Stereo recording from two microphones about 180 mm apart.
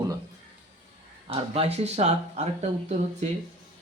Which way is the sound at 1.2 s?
30° right (ahead or behind).